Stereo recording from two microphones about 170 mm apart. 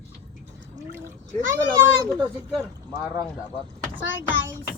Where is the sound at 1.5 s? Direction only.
15° right (ahead or behind).